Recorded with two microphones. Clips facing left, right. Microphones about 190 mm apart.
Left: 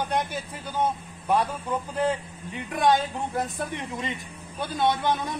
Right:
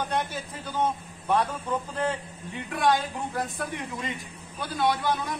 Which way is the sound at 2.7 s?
20° left (ahead or behind).